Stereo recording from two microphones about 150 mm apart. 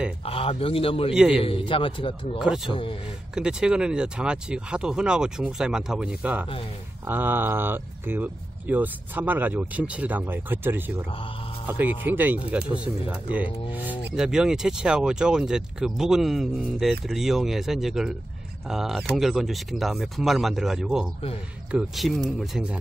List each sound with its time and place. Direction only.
0.2 s a man's voice: 40° left (ahead or behind)
1.1 s speech: 5° right (ahead or behind)
1.4 s a man's voice: 35° left (ahead or behind)
2.3 s speech: 5° right (ahead or behind)
2.7 s a man's voice: 35° left (ahead or behind)
3.3 s speech: 5° right (ahead or behind)